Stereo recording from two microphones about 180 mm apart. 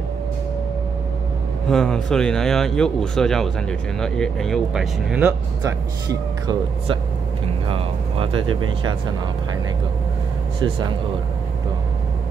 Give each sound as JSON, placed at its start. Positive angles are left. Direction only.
{"t": 1.7, "sound": "speech", "side_deg": 5}
{"t": 5.6, "sound": "speech", "side_deg": -20}